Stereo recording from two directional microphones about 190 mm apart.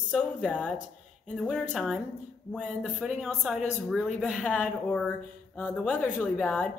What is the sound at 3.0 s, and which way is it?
Speech, centre (ahead or behind).